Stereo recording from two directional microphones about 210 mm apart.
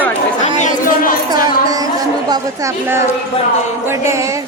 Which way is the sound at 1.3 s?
15° right (ahead or behind).